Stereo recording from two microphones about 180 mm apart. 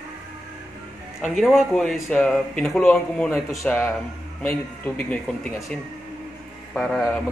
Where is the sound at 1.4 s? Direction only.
Centre (ahead or behind).